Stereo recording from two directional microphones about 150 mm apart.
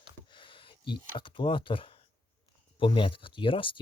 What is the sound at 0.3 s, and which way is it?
Speech, 35° left (ahead or behind).